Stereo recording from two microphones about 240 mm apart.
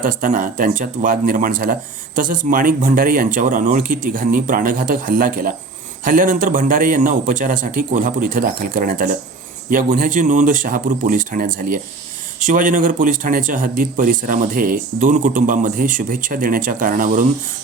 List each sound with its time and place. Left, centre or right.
0.0 s speech: right